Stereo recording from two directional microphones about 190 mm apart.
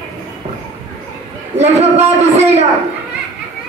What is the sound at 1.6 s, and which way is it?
A man's voice, 35° right (ahead or behind).